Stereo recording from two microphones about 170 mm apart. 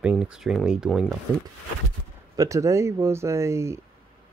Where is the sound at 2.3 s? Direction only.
20° right (ahead or behind).